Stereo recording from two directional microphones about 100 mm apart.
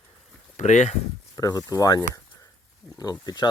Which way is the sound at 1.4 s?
40° left (ahead or behind).